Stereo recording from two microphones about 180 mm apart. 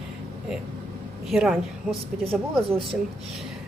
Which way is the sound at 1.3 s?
5° right (ahead or behind).